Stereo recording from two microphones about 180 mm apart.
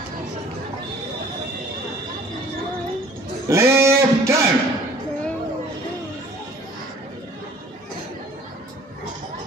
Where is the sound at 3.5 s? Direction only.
15° right (ahead or behind).